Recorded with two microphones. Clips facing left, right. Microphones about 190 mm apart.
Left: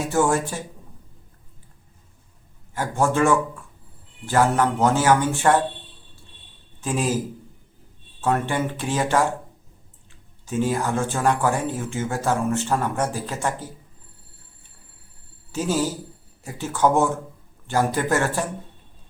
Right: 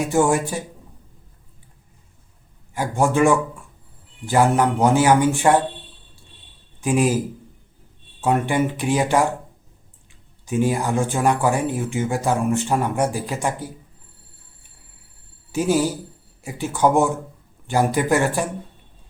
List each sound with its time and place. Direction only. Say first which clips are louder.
0.1 s speech: right 1 dB; 15° right (ahead or behind)
2.7 s speech: right 2 dB; 15° right (ahead or behind)
6.8 s speech: right 5 dB; 15° right (ahead or behind)
8.2 s speech: right 3 dB; 15° right (ahead or behind)
10.4 s speech: right 2 dB; 15° right (ahead or behind)
15.5 s speech: right 4 dB; 15° right (ahead or behind)